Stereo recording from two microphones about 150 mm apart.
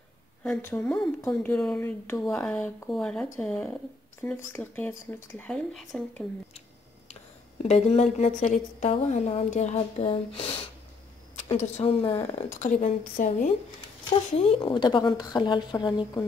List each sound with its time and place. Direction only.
0.4 s speech: 15° left (ahead or behind)
7.6 s speech: 45° left (ahead or behind)
11.5 s a woman's voice: 50° left (ahead or behind)
12.4 s a woman's voice: 55° left (ahead or behind)
14.3 s speech: 45° left (ahead or behind)
14.7 s speech: 30° left (ahead or behind)